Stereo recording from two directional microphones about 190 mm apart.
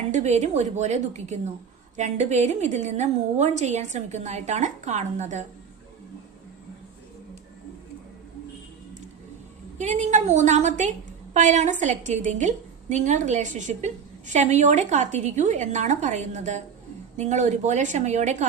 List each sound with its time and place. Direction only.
0.1 s a woman's voice: 35° right (ahead or behind)
9.7 s a woman's voice: 40° right (ahead or behind)